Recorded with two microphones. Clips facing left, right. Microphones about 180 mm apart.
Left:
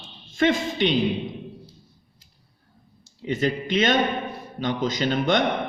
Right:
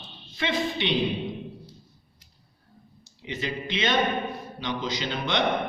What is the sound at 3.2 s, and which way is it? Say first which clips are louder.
A man's voice: left 7 dB; 45° left (ahead or behind).